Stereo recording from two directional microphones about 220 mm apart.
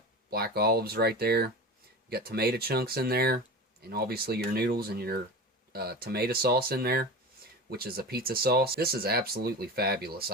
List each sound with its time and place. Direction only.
0.3 s speech: 45° right (ahead or behind)